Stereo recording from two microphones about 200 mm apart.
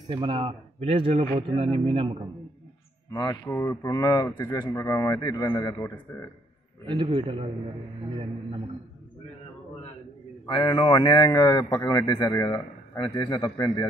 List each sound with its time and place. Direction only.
0.1 s speech: 25° right (ahead or behind)
3.1 s speech: 20° left (ahead or behind)
6.9 s speech: 25° right (ahead or behind)
10.4 s a man's voice: 20° left (ahead or behind)